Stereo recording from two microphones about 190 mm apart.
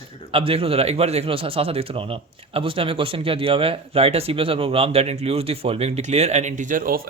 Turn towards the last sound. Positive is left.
turn(degrees=-50)  # may be behind; listen again after turning